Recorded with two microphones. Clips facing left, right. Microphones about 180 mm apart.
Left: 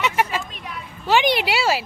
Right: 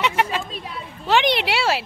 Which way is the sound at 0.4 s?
30° right (ahead or behind).